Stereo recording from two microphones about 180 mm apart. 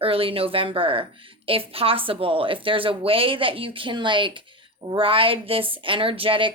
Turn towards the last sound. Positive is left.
turn(degrees=-30)  # may be behind; listen again after turning